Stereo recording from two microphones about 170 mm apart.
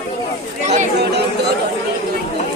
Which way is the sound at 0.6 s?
45° right (ahead or behind).